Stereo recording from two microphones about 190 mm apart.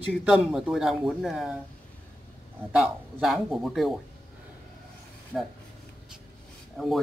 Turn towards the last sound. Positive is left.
turn(degrees=0)  # may be behind; listen again after turning